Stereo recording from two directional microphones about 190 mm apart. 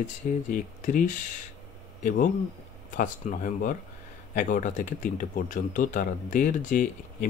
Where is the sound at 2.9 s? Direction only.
45° left (ahead or behind).